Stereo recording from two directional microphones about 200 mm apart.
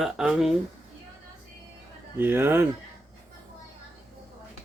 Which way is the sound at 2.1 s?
10° right (ahead or behind).